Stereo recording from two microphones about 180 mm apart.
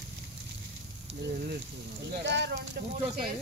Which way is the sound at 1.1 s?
70° right (ahead or behind).